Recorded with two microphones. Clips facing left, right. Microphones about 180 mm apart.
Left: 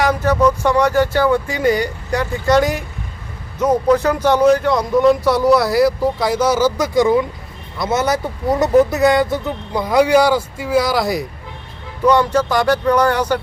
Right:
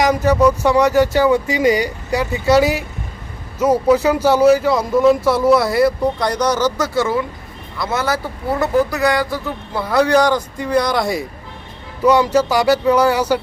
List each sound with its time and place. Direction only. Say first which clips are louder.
0.0 s a man's voice: right 1 dB; 10° right (ahead or behind)